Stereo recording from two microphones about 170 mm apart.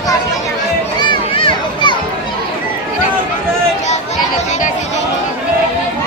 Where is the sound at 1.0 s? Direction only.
30° left (ahead or behind).